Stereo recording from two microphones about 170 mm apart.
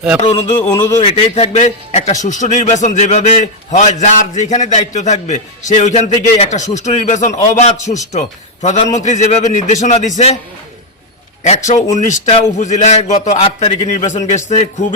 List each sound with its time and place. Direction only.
0.2 s a sound: 40° left (ahead or behind)
0.7 s a man's voice: 25° left (ahead or behind); by 10.1 s 45° left (ahead or behind)
11.4 s a man's voice: 45° left (ahead or behind)